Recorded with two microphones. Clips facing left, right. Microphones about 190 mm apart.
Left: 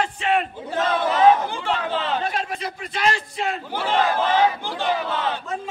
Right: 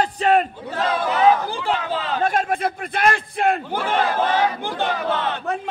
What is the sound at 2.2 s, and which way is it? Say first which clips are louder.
A man's voice: right 6 dB; 50° right (ahead or behind).